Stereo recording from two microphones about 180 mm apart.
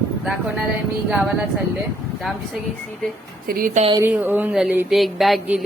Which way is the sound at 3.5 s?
50° right (ahead or behind).